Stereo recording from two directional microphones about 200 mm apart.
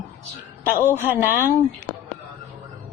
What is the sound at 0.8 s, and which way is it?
Speech, 10° left (ahead or behind).